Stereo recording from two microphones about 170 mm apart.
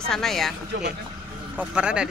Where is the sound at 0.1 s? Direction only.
Centre (ahead or behind).